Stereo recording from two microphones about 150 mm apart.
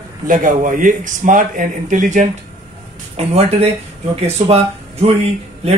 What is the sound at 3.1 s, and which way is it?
Speech, 45° right (ahead or behind).